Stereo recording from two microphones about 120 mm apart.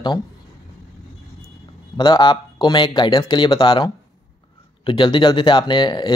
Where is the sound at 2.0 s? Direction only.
40° left (ahead or behind).